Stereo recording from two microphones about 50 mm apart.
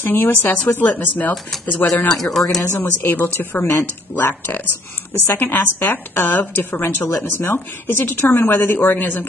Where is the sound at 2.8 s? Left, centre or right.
Left.